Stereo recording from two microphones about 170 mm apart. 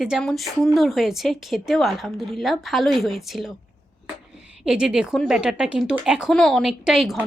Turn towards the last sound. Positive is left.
turn(degrees=0)  # may be behind; listen again after turning